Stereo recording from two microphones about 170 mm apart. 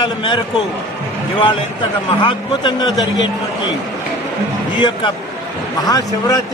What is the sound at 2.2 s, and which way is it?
Speech, 30° left (ahead or behind).